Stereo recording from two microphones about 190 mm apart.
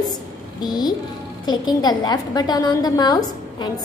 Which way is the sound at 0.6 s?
20° left (ahead or behind).